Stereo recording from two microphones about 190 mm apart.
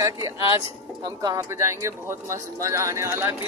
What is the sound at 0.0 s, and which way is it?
Speech, 15° right (ahead or behind).